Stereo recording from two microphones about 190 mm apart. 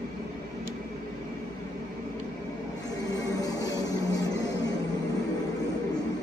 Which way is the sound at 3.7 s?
20° left (ahead or behind).